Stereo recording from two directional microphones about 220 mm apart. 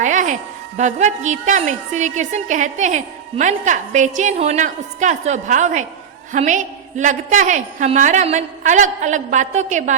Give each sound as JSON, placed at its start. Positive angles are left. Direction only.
{"t": 0.0, "sound": "a woman's voice", "side_deg": -35}